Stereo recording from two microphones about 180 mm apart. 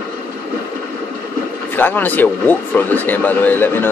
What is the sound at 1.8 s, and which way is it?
Speech, 10° left (ahead or behind).